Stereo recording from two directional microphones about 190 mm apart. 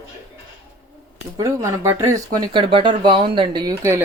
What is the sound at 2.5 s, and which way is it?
Speech, 25° right (ahead or behind).